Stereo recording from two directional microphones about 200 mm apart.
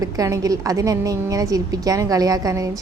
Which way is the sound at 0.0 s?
15° right (ahead or behind).